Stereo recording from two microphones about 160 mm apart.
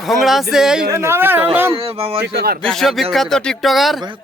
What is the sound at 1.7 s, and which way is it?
Speech, 35° right (ahead or behind).